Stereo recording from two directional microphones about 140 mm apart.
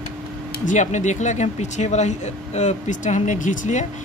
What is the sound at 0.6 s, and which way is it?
Speech, 60° left (ahead or behind).